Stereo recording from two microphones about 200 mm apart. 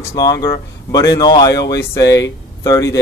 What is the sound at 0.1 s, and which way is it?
A man's voice, 20° left (ahead or behind).